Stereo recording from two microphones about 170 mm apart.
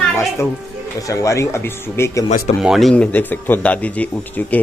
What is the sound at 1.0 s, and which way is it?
A man's voice, 20° left (ahead or behind).